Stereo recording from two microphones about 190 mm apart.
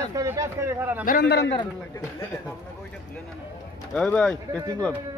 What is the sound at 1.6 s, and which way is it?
Speech, 15° left (ahead or behind).